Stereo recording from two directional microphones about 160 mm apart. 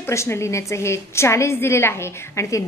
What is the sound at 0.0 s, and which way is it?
A woman's voice, 15° left (ahead or behind).